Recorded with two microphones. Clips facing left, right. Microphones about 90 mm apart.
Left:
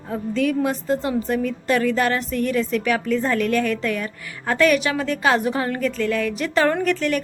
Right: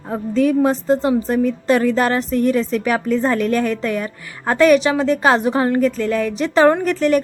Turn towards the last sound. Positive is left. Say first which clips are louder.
# right 5 dB
turn(degrees=-35)  # may be behind; listen again after turning